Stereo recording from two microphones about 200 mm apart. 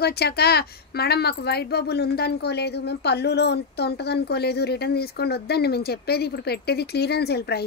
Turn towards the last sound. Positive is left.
turn(degrees=55)  # may be behind; listen again after turning